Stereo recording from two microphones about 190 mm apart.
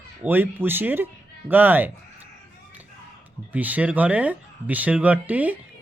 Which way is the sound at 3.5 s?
10° right (ahead or behind).